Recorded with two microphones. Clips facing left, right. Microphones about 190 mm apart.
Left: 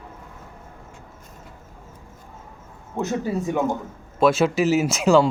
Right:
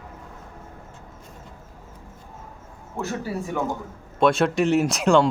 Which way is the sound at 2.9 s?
20° left (ahead or behind).